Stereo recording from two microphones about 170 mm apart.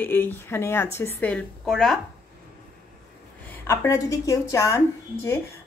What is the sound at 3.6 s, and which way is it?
Speech, 20° left (ahead or behind).